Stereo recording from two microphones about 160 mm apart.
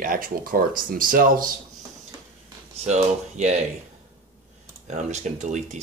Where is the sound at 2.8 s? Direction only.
40° right (ahead or behind).